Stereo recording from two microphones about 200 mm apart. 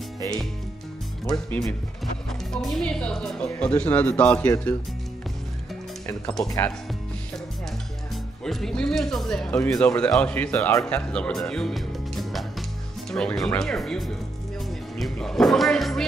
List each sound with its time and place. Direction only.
1.2 s speech: 15° left (ahead or behind)
2.5 s speech: centre (ahead or behind)
6.0 s speech: 5° left (ahead or behind)
6.4 s speech: 15° left (ahead or behind)
8.5 s speech: centre (ahead or behind)